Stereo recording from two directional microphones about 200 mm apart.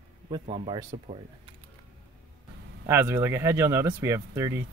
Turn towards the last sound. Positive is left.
turn(degrees=-15)  # may be behind; listen again after turning